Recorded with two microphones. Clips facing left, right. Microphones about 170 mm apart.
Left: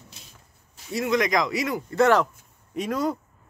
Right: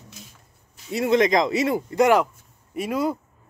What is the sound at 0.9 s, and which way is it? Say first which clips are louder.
Speech: right 4 dB; 25° right (ahead or behind).